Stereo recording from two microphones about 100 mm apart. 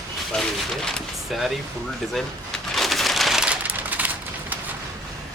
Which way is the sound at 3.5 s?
15° right (ahead or behind).